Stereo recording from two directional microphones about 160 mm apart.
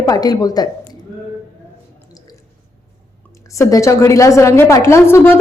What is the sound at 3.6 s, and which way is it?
A woman's voice, 20° left (ahead or behind).